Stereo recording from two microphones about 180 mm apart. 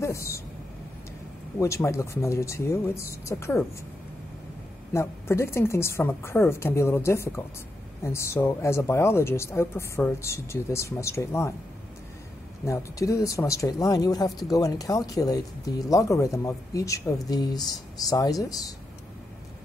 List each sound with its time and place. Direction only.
0.0 s vehicle: 15° left (ahead or behind)
1.6 s speech: 15° left (ahead or behind)
4.9 s speech: 15° left (ahead or behind)
12.6 s speech: 15° left (ahead or behind)